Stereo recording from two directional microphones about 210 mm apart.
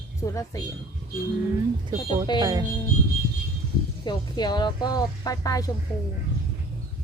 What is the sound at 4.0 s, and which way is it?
Speech, 20° left (ahead or behind).